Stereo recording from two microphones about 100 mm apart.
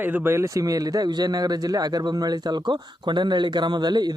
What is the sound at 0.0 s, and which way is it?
A man's voice, 20° right (ahead or behind).